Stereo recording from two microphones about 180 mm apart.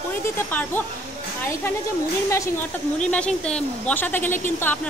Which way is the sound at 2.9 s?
5° left (ahead or behind).